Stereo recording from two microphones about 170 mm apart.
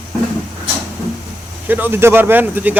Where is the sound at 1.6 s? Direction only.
10° right (ahead or behind).